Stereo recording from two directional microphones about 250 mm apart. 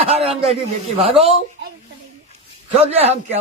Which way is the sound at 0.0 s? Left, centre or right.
Right.